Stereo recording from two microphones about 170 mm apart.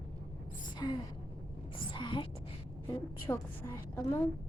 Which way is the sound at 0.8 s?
20° left (ahead or behind).